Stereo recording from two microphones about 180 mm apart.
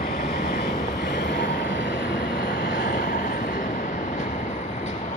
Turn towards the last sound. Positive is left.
turn(degrees=50)  # may be behind; listen again after turning